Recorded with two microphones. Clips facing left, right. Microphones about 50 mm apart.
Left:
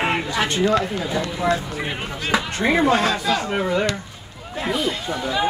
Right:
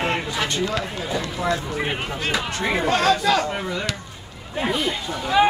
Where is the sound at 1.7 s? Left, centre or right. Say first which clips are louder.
Right 2 dB; centre.